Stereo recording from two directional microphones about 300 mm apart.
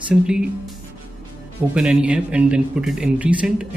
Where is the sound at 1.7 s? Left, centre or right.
Centre.